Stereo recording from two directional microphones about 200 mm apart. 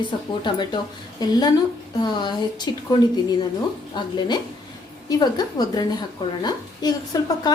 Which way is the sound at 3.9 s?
20° left (ahead or behind).